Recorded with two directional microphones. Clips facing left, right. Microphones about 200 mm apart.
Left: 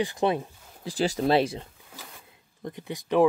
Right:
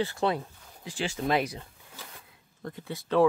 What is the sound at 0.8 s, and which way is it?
Speech, 40° left (ahead or behind).